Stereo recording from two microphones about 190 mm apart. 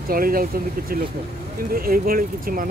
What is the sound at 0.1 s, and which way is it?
Speech, 50° right (ahead or behind).